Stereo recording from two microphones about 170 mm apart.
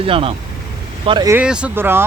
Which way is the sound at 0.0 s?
30° right (ahead or behind).